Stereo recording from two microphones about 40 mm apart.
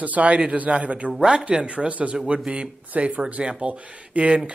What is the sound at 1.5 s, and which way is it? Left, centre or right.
Speech, right.